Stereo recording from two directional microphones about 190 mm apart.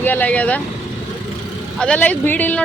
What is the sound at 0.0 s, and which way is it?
Speech, 10° left (ahead or behind).